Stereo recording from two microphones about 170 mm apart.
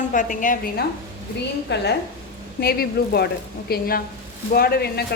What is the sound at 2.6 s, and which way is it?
A woman's voice, 65° left (ahead or behind).